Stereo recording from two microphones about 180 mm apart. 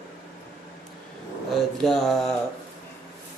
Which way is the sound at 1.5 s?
Centre (ahead or behind).